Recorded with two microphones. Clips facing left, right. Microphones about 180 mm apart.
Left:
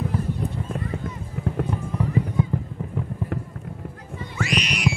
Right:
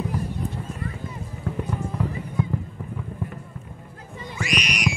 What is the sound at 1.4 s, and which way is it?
Music, 70° left (ahead or behind).